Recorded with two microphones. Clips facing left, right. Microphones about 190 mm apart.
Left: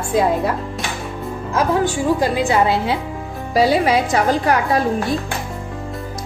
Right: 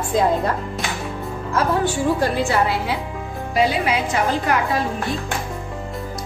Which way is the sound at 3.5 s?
35° left (ahead or behind).